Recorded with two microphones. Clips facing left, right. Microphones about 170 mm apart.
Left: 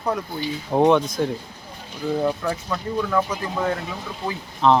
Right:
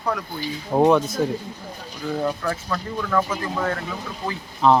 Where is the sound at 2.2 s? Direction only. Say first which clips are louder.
Even; 15° left (ahead or behind).